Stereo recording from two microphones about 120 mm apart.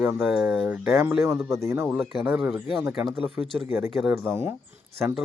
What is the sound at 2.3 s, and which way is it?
Speech, 5° right (ahead or behind).